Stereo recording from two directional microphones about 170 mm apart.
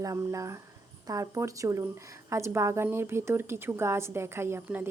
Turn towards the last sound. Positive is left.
turn(degrees=-15)  # may be behind; listen again after turning